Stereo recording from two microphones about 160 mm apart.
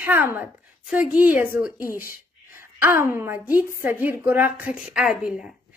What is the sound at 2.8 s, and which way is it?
A woman's voice, 15° right (ahead or behind).